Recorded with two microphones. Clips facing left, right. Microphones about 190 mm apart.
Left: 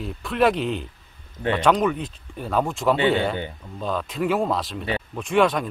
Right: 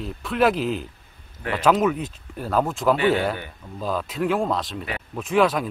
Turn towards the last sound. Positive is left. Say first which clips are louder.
# even
turn(degrees=0)  # may be behind; listen again after turning